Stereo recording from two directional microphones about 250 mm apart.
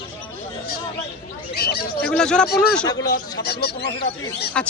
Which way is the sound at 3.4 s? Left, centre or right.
Left.